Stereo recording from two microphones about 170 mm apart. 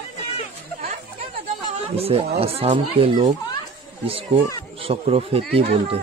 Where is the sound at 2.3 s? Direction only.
35° right (ahead or behind).